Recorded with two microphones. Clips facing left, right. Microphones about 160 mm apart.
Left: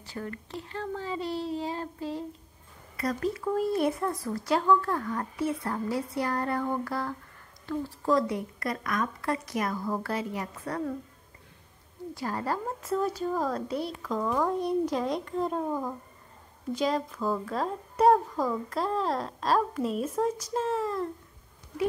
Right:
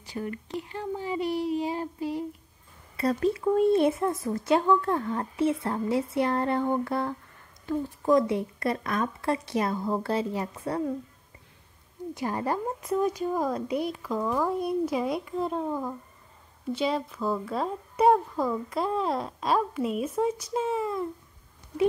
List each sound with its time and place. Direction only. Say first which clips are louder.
0.0 s a woman's voice: right 3 dB; 15° right (ahead or behind)
3.0 s speech: right 4 dB; 25° right (ahead or behind)
12.1 s a woman's voice: right 2 dB; 20° right (ahead or behind); by 21.1 s 5° right (ahead or behind)